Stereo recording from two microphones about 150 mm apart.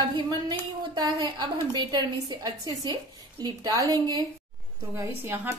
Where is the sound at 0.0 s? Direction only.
30° right (ahead or behind).